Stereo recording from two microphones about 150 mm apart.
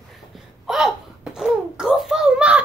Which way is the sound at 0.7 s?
5° right (ahead or behind).